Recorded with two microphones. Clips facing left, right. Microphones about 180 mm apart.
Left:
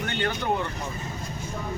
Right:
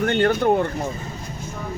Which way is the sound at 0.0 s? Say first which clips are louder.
Right 10 dB; 45° right (ahead or behind).